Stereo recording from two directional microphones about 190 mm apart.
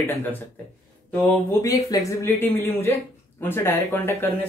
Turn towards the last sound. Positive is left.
turn(degrees=15)  # may be behind; listen again after turning